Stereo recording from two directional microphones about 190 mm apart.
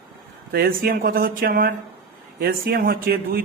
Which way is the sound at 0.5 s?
50° right (ahead or behind).